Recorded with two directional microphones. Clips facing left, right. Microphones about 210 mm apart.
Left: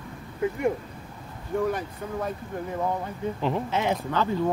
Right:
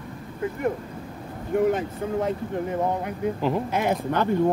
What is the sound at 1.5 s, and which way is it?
Speech, 20° right (ahead or behind).